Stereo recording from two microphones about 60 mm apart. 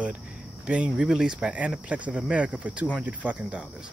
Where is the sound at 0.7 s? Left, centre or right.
Centre.